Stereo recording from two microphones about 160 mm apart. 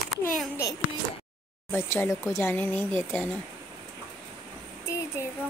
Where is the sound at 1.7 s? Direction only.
15° left (ahead or behind).